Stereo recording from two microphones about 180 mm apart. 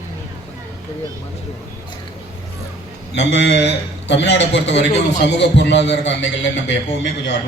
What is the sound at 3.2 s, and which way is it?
A man's voice, 80° left.